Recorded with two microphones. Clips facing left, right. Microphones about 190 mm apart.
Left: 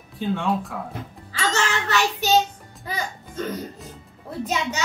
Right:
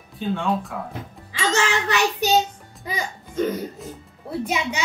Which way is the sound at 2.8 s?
15° right (ahead or behind).